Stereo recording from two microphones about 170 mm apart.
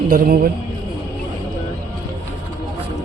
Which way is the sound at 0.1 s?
65° right (ahead or behind).